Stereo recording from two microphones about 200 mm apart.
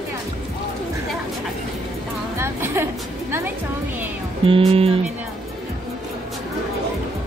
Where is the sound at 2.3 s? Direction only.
10° right (ahead or behind).